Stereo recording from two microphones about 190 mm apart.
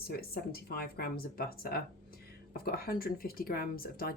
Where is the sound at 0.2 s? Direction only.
55° left (ahead or behind).